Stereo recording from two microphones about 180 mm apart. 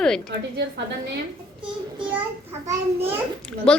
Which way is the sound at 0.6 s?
75° right (ahead or behind).